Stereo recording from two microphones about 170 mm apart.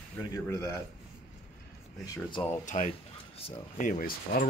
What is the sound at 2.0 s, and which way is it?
Speech, 25° left (ahead or behind).